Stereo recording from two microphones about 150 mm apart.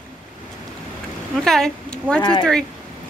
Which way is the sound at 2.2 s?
30° left (ahead or behind).